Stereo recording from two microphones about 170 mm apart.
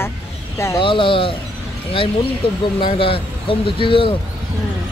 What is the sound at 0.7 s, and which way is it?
Speech, 30° left (ahead or behind).